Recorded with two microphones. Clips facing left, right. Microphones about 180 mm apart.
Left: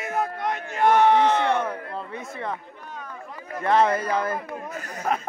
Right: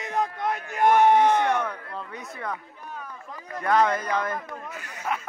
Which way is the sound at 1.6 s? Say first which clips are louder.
Left 3 dB; 25° left (ahead or behind).